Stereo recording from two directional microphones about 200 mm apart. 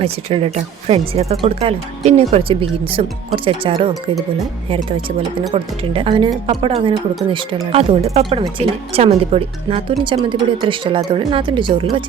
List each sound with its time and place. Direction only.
0.0 s speech: 30° right (ahead or behind)
5.5 s speech: 25° right (ahead or behind)